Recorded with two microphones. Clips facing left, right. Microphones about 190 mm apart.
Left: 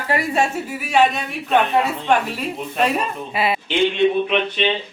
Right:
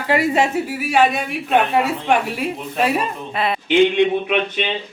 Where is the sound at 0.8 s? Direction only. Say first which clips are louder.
Even; 5° right (ahead or behind).